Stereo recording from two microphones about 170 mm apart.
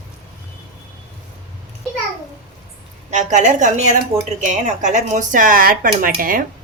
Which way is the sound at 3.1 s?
45° right (ahead or behind).